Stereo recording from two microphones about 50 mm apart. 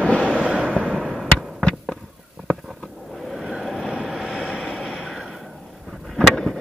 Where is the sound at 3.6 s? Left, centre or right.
Centre.